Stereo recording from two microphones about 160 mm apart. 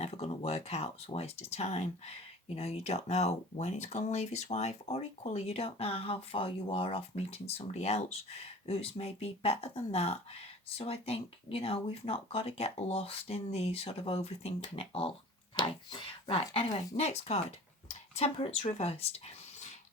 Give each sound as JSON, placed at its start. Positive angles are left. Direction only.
{"t": 0.0, "sound": "speech", "side_deg": 40}